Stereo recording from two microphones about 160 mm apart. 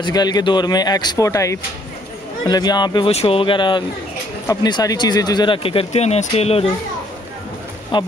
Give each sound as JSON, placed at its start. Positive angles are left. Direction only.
{"t": 0.0, "sound": "speech", "side_deg": 25}
{"t": 3.1, "sound": "speech", "side_deg": 40}
{"t": 7.9, "sound": "speech", "side_deg": 30}